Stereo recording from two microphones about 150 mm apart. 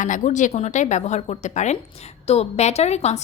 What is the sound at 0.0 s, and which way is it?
A woman's voice, 55° left (ahead or behind).